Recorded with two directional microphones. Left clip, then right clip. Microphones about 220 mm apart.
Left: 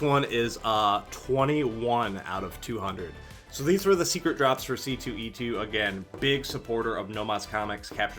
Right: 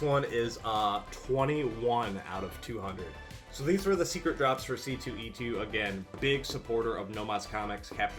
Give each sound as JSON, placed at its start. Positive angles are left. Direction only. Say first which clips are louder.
{"t": 0.0, "sound": "speech", "louder": "left 4 dB", "side_deg": 40}
{"t": 3.7, "sound": "speech", "louder": "left 5 dB", "side_deg": 45}